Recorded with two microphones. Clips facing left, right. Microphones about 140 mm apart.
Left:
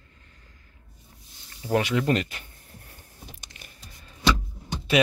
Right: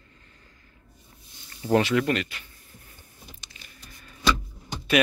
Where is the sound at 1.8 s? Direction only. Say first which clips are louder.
Right 2 dB; 20° left (ahead or behind).